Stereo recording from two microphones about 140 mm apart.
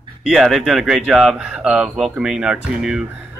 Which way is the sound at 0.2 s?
5° right (ahead or behind).